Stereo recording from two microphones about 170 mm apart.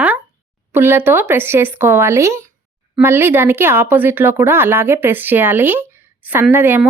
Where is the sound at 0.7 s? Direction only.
10° right (ahead or behind).